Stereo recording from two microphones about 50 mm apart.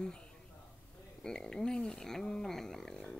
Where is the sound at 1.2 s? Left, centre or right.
Centre.